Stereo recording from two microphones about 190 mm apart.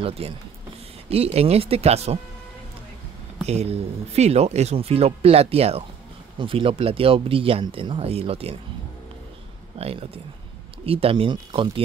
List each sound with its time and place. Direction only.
0.2 s speech: 30° right (ahead or behind)
3.4 s speech: 35° right (ahead or behind)
9.8 s speech: 30° right (ahead or behind)